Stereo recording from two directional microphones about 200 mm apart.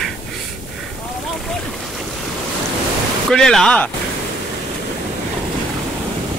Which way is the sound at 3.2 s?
Centre (ahead or behind).